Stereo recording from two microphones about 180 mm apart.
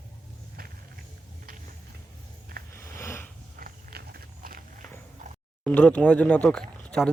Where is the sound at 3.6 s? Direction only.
55° right (ahead or behind).